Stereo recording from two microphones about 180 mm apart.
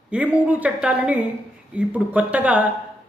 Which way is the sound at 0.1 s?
10° right (ahead or behind).